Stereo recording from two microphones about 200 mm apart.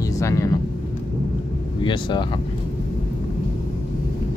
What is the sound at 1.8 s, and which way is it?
Speech, 25° left (ahead or behind).